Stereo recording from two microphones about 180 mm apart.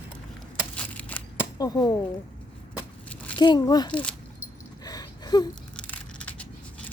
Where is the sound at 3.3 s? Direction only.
25° left (ahead or behind).